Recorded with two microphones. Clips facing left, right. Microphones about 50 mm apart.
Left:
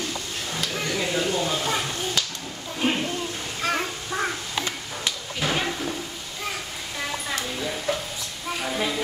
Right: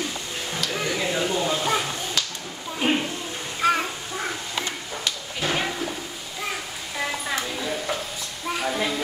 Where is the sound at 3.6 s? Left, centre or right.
Centre.